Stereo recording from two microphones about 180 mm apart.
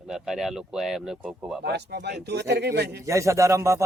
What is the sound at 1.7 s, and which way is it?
Speech, 65° right (ahead or behind).